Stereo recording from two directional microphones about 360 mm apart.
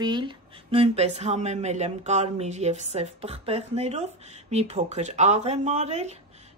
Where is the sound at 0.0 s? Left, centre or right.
Centre.